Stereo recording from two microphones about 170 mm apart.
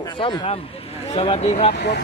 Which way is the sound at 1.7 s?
75° left (ahead or behind).